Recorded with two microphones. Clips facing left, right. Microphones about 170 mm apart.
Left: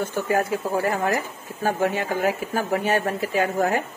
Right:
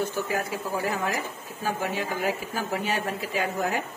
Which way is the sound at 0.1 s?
50° left (ahead or behind).